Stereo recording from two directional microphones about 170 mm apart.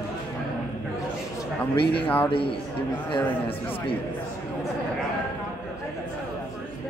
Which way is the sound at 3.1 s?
25° left (ahead or behind).